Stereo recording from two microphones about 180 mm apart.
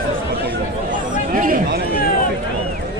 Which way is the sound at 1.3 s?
50° right (ahead or behind).